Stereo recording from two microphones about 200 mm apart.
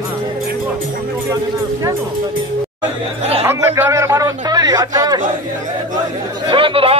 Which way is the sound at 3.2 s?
30° right (ahead or behind).